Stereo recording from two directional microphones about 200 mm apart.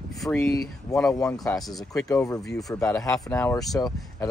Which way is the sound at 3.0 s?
20° left (ahead or behind).